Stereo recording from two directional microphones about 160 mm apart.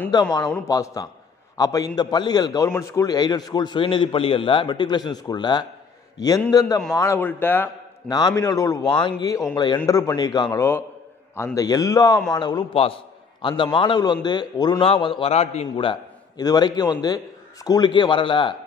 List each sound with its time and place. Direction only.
0.1 s a man's voice: 25° left (ahead or behind)